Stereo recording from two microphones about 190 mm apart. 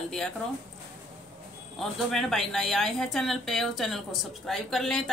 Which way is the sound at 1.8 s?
Centre (ahead or behind).